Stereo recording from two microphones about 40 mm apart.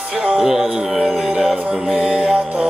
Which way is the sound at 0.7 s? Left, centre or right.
Centre.